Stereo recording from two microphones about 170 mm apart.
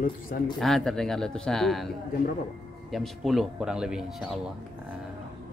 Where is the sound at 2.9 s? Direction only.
Centre (ahead or behind).